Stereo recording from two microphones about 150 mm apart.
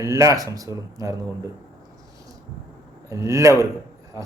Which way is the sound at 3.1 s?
20° right (ahead or behind).